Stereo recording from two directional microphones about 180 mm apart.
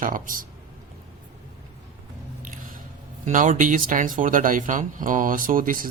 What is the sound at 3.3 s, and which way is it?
Speech, 45° right (ahead or behind).